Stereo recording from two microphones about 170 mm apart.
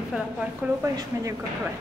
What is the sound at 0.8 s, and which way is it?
Speech, 15° right (ahead or behind).